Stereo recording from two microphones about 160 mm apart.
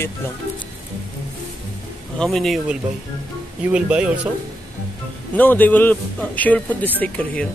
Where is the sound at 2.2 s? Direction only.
Centre (ahead or behind).